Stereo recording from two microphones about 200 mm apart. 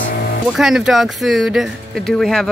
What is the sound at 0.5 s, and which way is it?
Speech, centre (ahead or behind).